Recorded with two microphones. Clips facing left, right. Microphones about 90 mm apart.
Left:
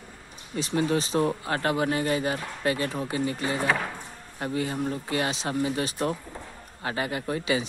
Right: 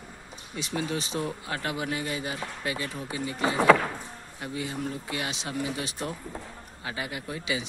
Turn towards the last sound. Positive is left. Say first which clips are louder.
# left 5 dB
turn(degrees=45)  # may be behind; listen again after turning